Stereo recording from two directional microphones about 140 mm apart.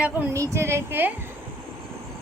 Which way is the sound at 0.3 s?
20° right (ahead or behind).